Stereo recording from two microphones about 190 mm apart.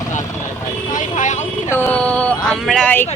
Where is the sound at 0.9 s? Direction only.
40° left (ahead or behind).